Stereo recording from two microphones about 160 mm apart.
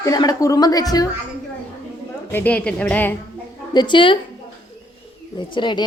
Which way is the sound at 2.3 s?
10° left (ahead or behind).